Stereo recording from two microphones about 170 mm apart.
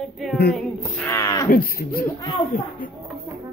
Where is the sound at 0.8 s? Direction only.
15° left (ahead or behind).